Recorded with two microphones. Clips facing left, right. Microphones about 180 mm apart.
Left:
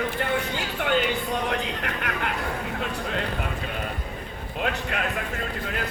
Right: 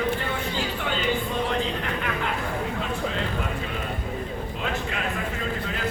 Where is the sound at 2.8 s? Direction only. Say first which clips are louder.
Right 1 dB; 70° left (ahead or behind).